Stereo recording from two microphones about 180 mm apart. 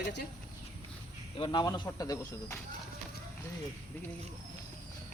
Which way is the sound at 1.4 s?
25° left (ahead or behind).